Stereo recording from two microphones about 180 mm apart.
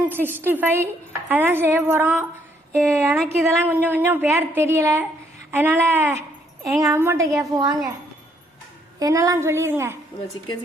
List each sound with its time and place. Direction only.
0.1 s a woman's voice: 10° right (ahead or behind)
9.0 s a woman's voice: 20° right (ahead or behind)